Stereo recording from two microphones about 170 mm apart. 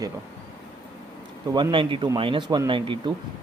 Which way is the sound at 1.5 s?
30° right (ahead or behind).